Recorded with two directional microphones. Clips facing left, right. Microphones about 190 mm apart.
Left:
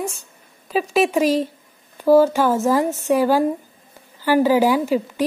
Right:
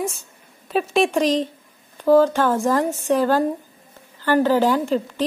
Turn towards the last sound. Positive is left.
turn(degrees=10)  # may be behind; listen again after turning